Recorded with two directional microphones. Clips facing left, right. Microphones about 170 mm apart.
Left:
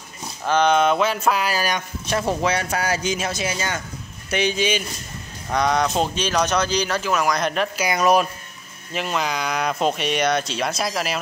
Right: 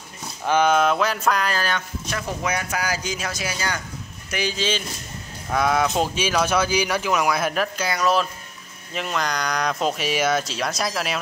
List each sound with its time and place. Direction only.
0.5 s speech: 5° right (ahead or behind); by 1.8 s 10° left (ahead or behind)
2.0 s speech: 30° left (ahead or behind)
5.5 s speech: 5° right (ahead or behind)
7.7 s speech: 15° left (ahead or behind)
8.9 s speech: centre (ahead or behind)